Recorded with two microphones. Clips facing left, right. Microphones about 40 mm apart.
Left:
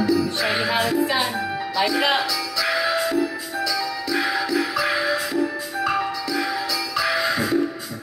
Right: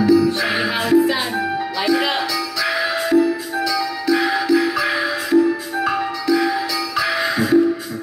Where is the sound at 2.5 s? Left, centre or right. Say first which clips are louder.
Even; right.